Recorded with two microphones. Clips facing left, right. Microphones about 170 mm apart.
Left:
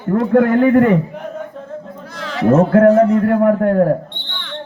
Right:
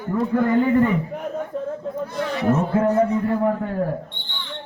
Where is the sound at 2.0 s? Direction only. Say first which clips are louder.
Left 5 dB; 90° left; by 3.9 s 70° left (ahead or behind).